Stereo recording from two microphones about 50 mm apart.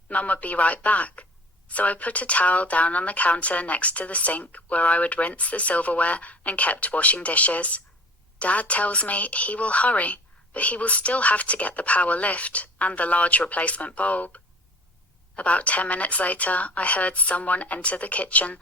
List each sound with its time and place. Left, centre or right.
0.1 s speech: left